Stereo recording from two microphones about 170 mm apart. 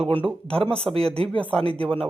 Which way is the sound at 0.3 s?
5° left (ahead or behind).